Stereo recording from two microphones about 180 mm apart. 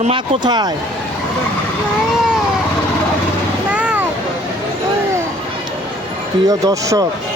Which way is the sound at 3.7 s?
5° right (ahead or behind).